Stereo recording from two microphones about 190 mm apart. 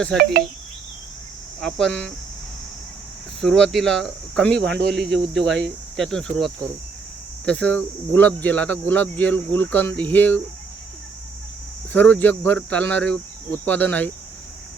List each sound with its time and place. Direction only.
0.2 s speech: 55° right (ahead or behind)
1.6 s speech: 5° left (ahead or behind)
3.4 s cricket: centre (ahead or behind)
7.4 s speech: 5° left (ahead or behind)
11.9 s speech: 10° left (ahead or behind)